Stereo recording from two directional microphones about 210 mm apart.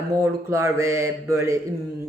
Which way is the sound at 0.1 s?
15° right (ahead or behind).